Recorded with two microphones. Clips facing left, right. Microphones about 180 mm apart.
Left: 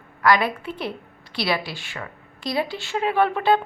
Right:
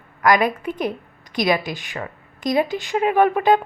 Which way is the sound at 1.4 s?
15° right (ahead or behind).